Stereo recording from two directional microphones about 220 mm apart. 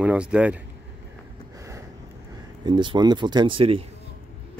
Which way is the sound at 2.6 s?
20° right (ahead or behind).